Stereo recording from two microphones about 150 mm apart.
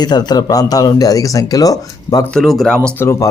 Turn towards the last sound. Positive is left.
turn(degrees=5)  # may be behind; listen again after turning